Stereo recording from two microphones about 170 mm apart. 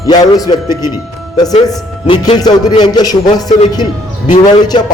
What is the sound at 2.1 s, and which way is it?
A man's voice, 25° left (ahead or behind).